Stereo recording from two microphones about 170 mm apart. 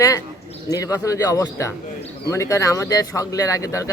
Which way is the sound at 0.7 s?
20° left (ahead or behind).